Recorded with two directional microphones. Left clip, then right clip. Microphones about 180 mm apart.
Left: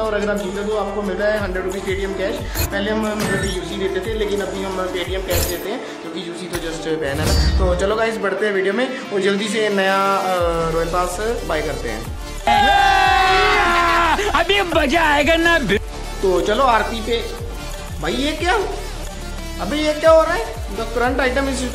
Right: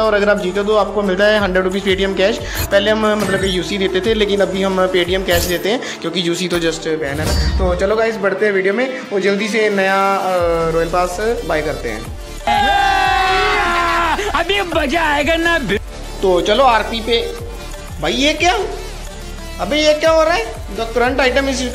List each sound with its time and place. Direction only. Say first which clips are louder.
0.0 s a man's voice: right 7 dB; 25° right (ahead or behind)
3.2 s speech: right 4 dB; centre (ahead or behind)
3.5 s speech: right 5 dB; 30° right (ahead or behind)
5.7 s speech: right 7 dB; 35° right (ahead or behind)
6.8 s speech: right 3 dB; 15° right (ahead or behind)
7.2 s speech: right 1 dB; centre (ahead or behind)
7.6 s speech: right 3 dB; 15° right (ahead or behind)
12.4 s a sound: even; centre (ahead or behind)
16.3 s speech: right 3 dB; centre (ahead or behind)
19.6 s speech: right 4 dB; 5° right (ahead or behind)